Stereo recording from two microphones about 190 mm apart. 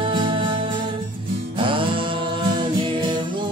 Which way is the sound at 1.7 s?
25° right (ahead or behind).